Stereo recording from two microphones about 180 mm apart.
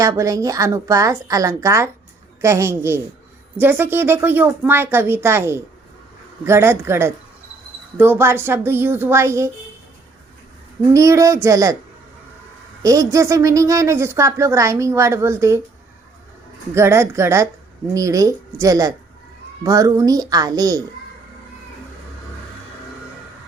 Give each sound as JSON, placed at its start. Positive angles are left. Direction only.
{"t": 0.0, "sound": "a woman's voice", "side_deg": -20}
{"t": 10.9, "sound": "a woman's voice", "side_deg": -15}
{"t": 12.8, "sound": "a woman's voice", "side_deg": -20}
{"t": 16.7, "sound": "a woman's voice", "side_deg": -15}